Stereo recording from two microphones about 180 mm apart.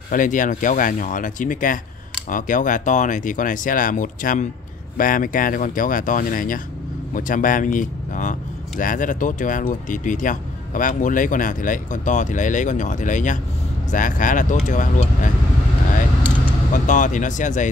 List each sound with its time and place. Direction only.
0.1 s speech: 45° left (ahead or behind)
16.7 s speech: 45° left (ahead or behind)